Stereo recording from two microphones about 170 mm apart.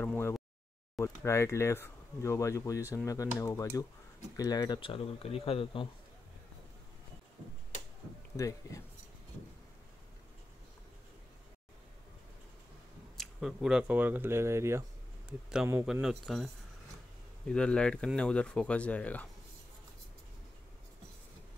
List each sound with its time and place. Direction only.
0.0 s a sound: 15° left (ahead or behind)
1.0 s speech: 15° left (ahead or behind); by 5.9 s 30° left (ahead or behind)
8.4 s speech: 20° left (ahead or behind)
13.2 s a man's voice: centre (ahead or behind)
17.5 s speech: 5° left (ahead or behind)